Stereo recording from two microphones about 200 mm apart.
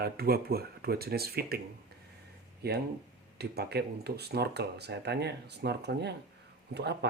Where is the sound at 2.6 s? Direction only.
55° right (ahead or behind).